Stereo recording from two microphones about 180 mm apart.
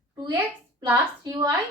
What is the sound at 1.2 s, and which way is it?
Speech, 15° right (ahead or behind).